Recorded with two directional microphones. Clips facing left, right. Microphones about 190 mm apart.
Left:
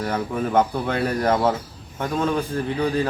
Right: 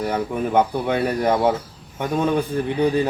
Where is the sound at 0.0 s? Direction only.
10° right (ahead or behind).